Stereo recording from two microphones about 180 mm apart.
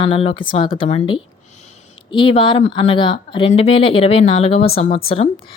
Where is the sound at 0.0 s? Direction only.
30° left (ahead or behind).